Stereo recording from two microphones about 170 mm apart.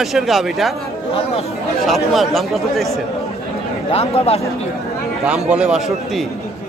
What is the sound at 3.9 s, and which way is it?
Speech, 35° left (ahead or behind).